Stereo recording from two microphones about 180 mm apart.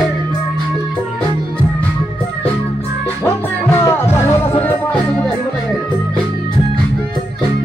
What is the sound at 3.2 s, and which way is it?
Music, 15° left (ahead or behind).